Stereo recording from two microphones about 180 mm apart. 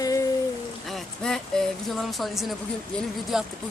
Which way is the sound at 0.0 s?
20° left (ahead or behind).